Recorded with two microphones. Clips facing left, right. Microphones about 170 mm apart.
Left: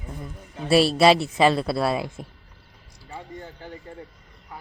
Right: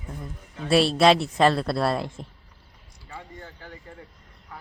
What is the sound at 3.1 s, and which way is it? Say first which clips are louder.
Speech: left 4 dB; 20° left (ahead or behind).